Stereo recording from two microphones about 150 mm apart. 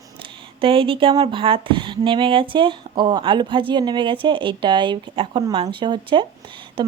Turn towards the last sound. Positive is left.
turn(degrees=-35)  # may be behind; listen again after turning